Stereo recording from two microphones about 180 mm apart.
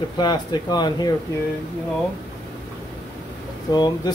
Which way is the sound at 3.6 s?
20° left (ahead or behind).